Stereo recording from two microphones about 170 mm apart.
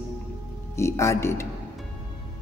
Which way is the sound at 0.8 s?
15° left (ahead or behind).